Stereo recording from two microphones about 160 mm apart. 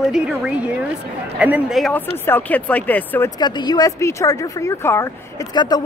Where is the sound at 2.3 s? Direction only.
10° left (ahead or behind).